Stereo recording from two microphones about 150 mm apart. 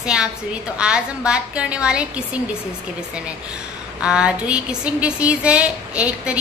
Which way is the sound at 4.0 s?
5° right (ahead or behind).